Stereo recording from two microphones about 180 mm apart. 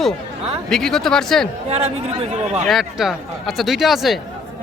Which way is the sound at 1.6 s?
35° right (ahead or behind).